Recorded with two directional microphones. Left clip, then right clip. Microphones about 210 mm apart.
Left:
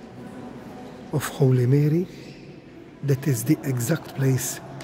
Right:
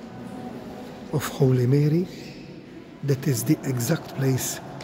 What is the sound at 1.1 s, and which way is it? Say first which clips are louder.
Speech: even; 10° left (ahead or behind).